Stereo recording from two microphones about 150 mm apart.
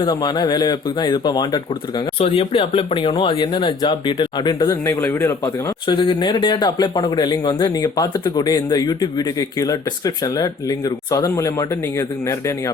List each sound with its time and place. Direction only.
0.0 s speech: 30° left (ahead or behind)
2.1 s speech: 40° left (ahead or behind); by 5.3 s 15° left (ahead or behind)
5.9 s speech: 30° left (ahead or behind)